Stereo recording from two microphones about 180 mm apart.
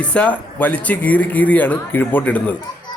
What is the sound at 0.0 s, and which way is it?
A man's voice, 5° left (ahead or behind).